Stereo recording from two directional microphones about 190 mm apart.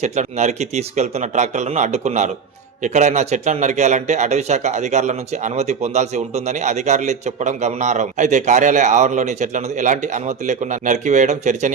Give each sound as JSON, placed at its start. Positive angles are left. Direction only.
{"t": 0.0, "sound": "speech", "side_deg": -35}